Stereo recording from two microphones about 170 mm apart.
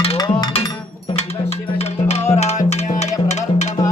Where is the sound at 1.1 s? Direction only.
40° left (ahead or behind).